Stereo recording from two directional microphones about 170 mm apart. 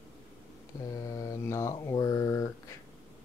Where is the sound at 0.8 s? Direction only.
20° left (ahead or behind).